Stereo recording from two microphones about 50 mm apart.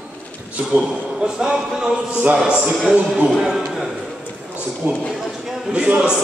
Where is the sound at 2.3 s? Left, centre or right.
Centre.